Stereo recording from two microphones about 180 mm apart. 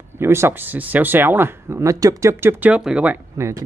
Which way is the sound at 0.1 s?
15° right (ahead or behind).